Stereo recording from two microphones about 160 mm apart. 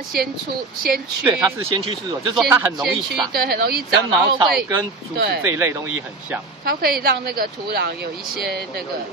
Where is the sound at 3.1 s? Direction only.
80° right.